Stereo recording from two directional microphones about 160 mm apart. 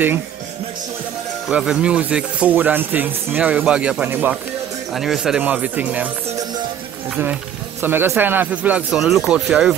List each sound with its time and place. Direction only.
1.5 s speech: 5° right (ahead or behind)
7.8 s speech: 15° right (ahead or behind)